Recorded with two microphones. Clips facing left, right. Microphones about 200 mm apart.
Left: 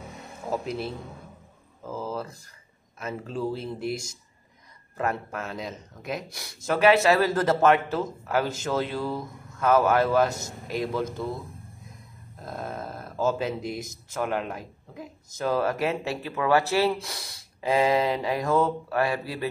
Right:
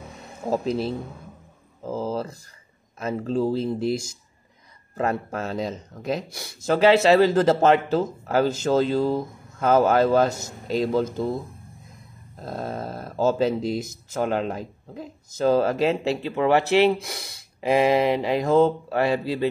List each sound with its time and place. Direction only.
0.5 s speech: 30° right (ahead or behind)
12.4 s speech: 30° right (ahead or behind)